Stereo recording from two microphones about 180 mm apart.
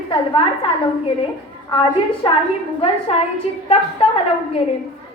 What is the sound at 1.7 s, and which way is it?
Speech, 30° left (ahead or behind).